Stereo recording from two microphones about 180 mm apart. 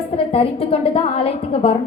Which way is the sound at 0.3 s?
30° left (ahead or behind).